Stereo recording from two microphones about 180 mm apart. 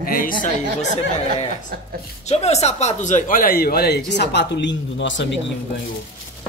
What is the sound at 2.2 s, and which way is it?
Speech, 35° left (ahead or behind).